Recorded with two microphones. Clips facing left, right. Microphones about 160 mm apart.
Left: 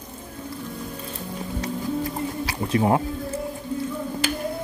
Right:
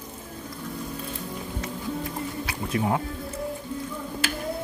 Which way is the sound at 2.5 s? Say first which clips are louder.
Left 5 dB; 35° left (ahead or behind).